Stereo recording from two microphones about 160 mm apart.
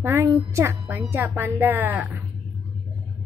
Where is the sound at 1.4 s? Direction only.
15° right (ahead or behind).